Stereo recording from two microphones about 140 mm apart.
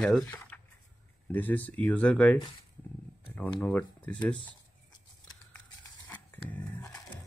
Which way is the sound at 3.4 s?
10° left (ahead or behind).